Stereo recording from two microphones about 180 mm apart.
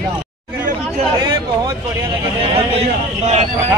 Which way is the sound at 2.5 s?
35° right (ahead or behind).